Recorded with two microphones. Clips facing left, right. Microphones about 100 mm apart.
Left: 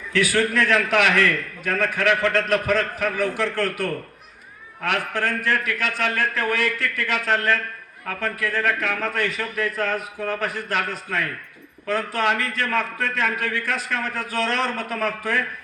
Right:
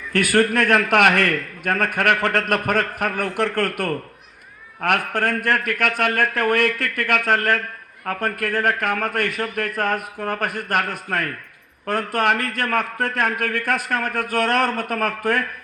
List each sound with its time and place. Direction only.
0.1 s a man's voice: 55° right (ahead or behind)